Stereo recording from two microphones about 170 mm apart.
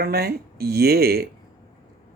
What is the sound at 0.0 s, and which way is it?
Speech, 65° right (ahead or behind).